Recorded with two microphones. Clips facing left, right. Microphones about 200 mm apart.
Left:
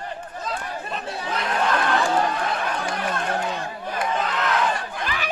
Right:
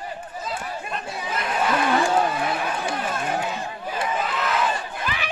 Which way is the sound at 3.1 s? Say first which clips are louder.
Even; 5° right (ahead or behind).